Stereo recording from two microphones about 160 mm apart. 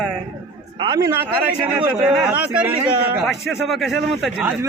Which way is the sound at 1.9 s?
5° right (ahead or behind).